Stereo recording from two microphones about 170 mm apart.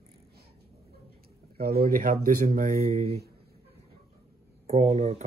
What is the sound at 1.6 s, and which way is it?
Speech, 60° right (ahead or behind).